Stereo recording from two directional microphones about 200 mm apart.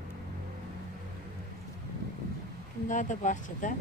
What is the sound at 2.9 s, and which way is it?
Speech, 40° left (ahead or behind).